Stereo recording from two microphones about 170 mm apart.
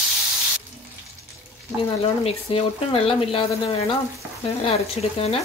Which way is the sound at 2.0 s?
35° left (ahead or behind).